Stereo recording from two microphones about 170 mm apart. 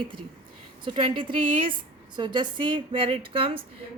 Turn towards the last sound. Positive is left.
turn(degrees=-30)  # may be behind; listen again after turning